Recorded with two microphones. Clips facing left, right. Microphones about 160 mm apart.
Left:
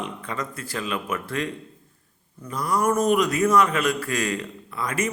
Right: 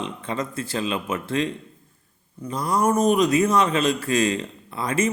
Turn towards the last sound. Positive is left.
turn(degrees=-25)  # may be behind; listen again after turning